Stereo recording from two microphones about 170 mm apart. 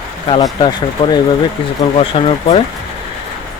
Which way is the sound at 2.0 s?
30° left (ahead or behind).